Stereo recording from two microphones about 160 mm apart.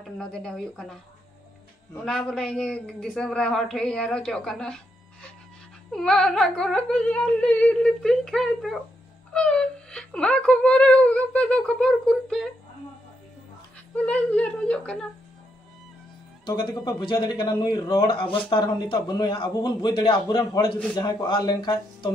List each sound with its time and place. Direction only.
0.0 s a man's voice: 5° left (ahead or behind)
2.0 s a man's voice: 5° left (ahead or behind)
13.9 s speech: 10° left (ahead or behind)
16.4 s speech: 30° left (ahead or behind)